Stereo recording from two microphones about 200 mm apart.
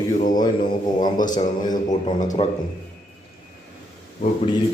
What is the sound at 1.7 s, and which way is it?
Speech, 20° left (ahead or behind).